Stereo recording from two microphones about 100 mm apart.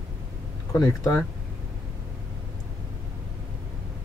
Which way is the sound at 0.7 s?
35° left (ahead or behind).